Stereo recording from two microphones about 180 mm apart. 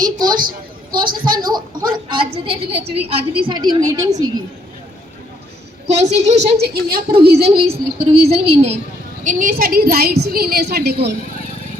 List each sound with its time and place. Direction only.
0.0 s a woman's voice: 25° right (ahead or behind)
6.0 s a woman's voice: 40° right (ahead or behind)
6.6 s a woman's voice: 60° right (ahead or behind)
8.3 s a woman's voice: 35° right (ahead or behind)
9.2 s a woman's voice: 45° right (ahead or behind)